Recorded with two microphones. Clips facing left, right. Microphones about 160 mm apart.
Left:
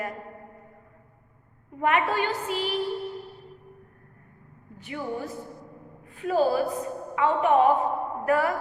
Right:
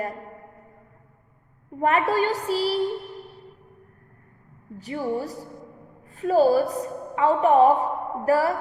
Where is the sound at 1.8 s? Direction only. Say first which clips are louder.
Right 3 dB; 35° right (ahead or behind).